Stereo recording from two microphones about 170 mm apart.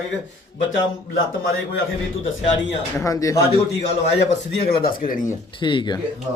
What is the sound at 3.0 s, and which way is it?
Speech, 20° left (ahead or behind).